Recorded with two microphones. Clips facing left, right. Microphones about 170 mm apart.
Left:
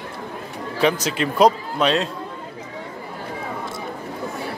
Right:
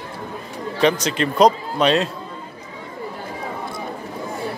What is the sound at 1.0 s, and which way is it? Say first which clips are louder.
Speech: even; 5° left (ahead or behind).